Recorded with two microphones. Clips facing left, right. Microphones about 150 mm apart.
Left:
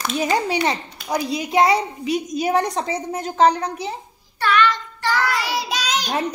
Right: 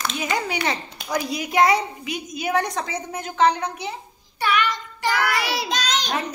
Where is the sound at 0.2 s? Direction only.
30° left (ahead or behind).